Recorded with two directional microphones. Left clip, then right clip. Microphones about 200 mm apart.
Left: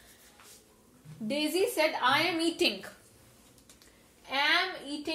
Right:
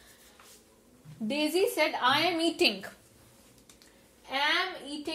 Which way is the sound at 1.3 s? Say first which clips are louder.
Right 1 dB; 30° right (ahead or behind).